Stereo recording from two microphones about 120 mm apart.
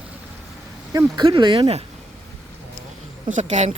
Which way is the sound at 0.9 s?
35° right (ahead or behind).